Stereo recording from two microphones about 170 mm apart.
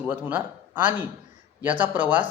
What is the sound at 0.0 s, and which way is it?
A man's voice, 10° right (ahead or behind).